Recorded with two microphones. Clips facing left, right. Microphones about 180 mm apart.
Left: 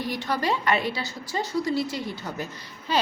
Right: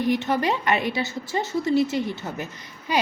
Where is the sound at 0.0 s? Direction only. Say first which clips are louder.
Right 5 dB; 20° right (ahead or behind).